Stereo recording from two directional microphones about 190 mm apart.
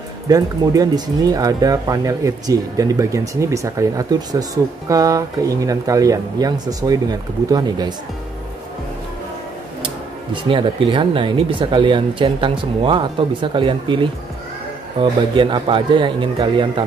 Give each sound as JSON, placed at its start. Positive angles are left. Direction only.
{"t": 0.3, "sound": "speech", "side_deg": -20}
{"t": 10.3, "sound": "speech", "side_deg": -25}